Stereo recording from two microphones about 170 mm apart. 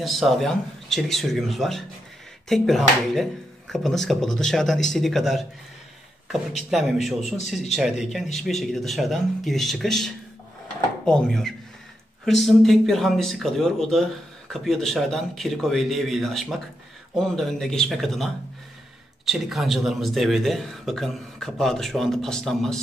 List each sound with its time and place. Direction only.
0.0 s speech: centre (ahead or behind)
6.7 s speech: centre (ahead or behind)